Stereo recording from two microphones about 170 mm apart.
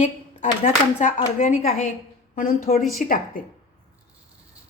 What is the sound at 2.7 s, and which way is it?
Speech, 60° left (ahead or behind).